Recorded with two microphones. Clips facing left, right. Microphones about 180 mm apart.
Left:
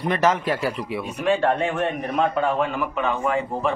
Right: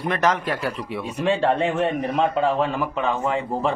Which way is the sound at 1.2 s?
30° right (ahead or behind).